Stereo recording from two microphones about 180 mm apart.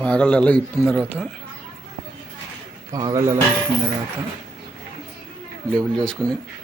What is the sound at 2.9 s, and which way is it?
Speech, 20° right (ahead or behind).